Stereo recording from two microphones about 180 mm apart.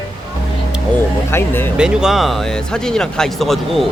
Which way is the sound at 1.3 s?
15° left (ahead or behind).